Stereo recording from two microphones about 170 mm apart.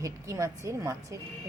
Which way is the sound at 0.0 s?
20° right (ahead or behind).